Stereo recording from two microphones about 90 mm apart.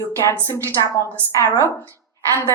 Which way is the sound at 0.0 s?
35° left (ahead or behind).